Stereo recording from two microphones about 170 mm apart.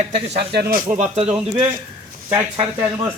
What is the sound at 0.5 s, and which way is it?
Speech, 65° right (ahead or behind).